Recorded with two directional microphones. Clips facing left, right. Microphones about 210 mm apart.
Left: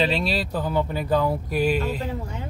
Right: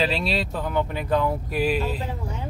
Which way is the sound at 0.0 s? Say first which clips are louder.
Left 1 dB; centre (ahead or behind).